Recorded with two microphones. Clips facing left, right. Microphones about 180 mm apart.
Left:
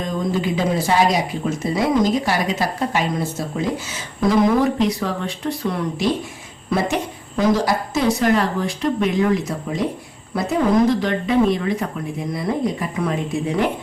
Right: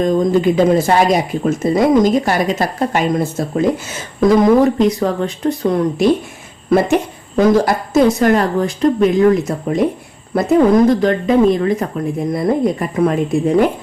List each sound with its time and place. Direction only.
0.0 s speech: 50° right (ahead or behind)
7.3 s speech: 50° right (ahead or behind)